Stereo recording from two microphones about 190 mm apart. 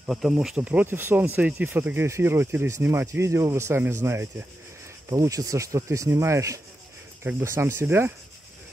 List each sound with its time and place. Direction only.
0.0 s speech: centre (ahead or behind)